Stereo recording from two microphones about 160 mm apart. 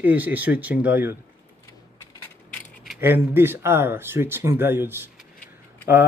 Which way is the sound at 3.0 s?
15° right (ahead or behind).